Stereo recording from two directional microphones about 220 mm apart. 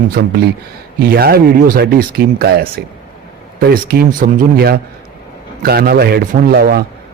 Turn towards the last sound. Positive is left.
turn(degrees=-45)  # may be behind; listen again after turning